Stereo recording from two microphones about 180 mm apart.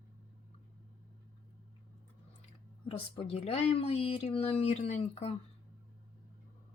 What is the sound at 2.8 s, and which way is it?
Speech, 30° left (ahead or behind).